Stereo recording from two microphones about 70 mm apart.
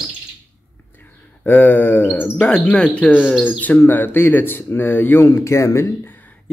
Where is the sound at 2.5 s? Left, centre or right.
Centre.